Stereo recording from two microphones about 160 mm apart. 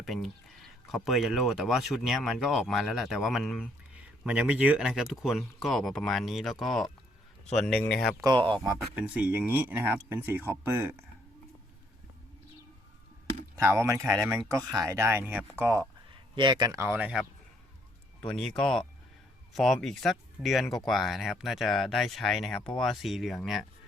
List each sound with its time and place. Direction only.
0.0 s speech: centre (ahead or behind)
8.2 s speech: 30° right (ahead or behind)
9.0 s speech: 10° right (ahead or behind)
13.6 s speech: 15° right (ahead or behind)
16.0 s a man's voice: 30° right (ahead or behind); by 17.2 s 5° right (ahead or behind)
18.2 s speech: 5° left (ahead or behind)